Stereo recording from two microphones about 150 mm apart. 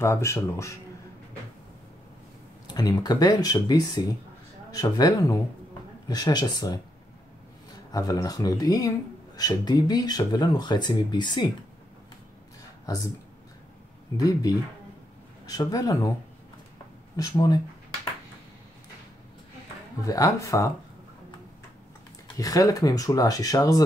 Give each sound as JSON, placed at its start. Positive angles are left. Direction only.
{"t": 0.0, "sound": "speech", "side_deg": 20}
{"t": 2.7, "sound": "speech", "side_deg": 25}
{"t": 7.9, "sound": "speech", "side_deg": 25}
{"t": 12.8, "sound": "speech", "side_deg": 25}
{"t": 14.1, "sound": "speech", "side_deg": 25}
{"t": 17.2, "sound": "speech", "side_deg": 25}
{"t": 20.0, "sound": "speech", "side_deg": 20}
{"t": 22.4, "sound": "speech", "side_deg": 25}